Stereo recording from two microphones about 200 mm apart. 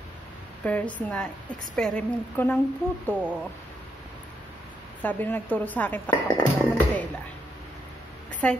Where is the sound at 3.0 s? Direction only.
5° right (ahead or behind).